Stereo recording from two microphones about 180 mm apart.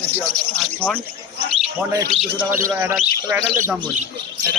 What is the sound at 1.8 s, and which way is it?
Speech, 15° right (ahead or behind).